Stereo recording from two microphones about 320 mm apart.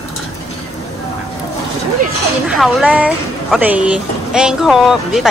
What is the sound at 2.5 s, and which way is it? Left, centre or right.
A woman's voice, centre.